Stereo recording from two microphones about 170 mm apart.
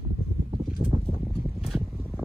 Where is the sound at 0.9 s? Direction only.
35° right (ahead or behind).